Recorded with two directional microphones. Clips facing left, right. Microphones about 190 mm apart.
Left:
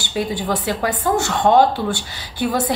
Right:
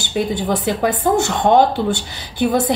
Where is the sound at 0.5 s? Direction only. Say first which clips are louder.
Right 3 dB; 20° right (ahead or behind).